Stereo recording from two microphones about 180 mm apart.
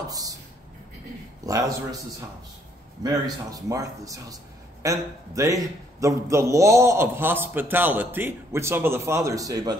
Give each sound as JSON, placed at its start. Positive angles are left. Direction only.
{"t": 0.1, "sound": "a sound", "side_deg": -20}
{"t": 1.4, "sound": "speech", "side_deg": -20}
{"t": 3.0, "sound": "a man's voice", "side_deg": -20}